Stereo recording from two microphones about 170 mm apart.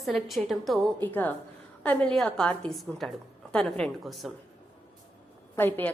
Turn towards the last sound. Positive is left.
turn(degrees=10)  # may be behind; listen again after turning